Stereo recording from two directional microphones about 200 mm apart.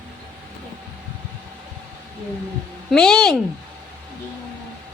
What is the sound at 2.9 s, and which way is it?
Speech, 5° left (ahead or behind).